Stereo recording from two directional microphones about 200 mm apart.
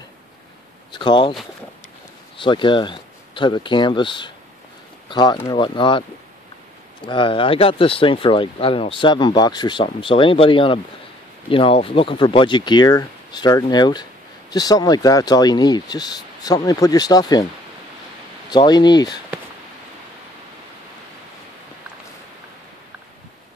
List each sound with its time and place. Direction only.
0.9 s speech: 25° left (ahead or behind)
2.3 s speech: 25° left (ahead or behind)
7.1 s speech: 25° left (ahead or behind)
18.5 s speech: 20° left (ahead or behind)